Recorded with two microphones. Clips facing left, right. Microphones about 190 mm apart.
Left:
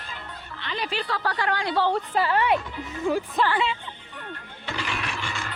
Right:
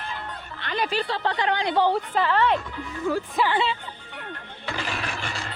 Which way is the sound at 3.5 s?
30° right (ahead or behind).